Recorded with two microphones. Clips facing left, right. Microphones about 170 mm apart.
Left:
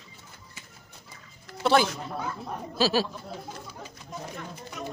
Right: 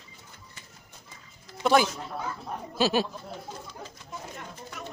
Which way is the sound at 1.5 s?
60° left (ahead or behind).